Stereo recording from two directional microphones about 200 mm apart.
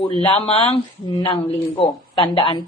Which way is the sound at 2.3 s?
25° left (ahead or behind).